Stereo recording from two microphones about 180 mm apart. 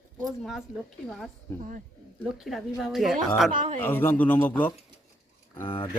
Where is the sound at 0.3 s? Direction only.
Centre (ahead or behind).